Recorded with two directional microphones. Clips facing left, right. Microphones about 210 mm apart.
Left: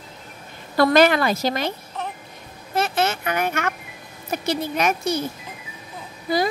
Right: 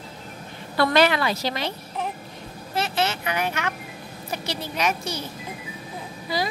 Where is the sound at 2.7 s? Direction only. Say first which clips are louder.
Left 3 dB; 50° left (ahead or behind).